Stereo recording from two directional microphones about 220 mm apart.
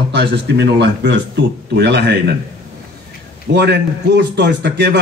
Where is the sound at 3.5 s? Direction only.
50° right (ahead or behind).